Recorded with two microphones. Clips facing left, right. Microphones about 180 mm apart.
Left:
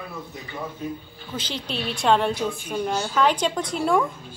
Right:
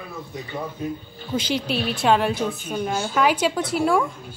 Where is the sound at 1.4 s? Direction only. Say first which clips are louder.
Right 6 dB; 10° right (ahead or behind).